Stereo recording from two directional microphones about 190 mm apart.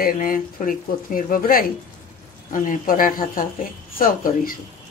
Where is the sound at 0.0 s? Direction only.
45° left (ahead or behind).